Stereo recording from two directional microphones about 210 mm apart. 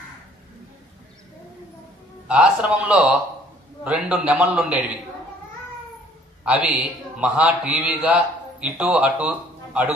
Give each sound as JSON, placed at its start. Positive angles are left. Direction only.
{"t": 2.2, "sound": "a man's voice", "side_deg": -5}
{"t": 6.4, "sound": "a man's voice", "side_deg": -5}